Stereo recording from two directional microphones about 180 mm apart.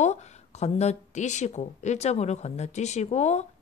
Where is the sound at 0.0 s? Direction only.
40° left (ahead or behind).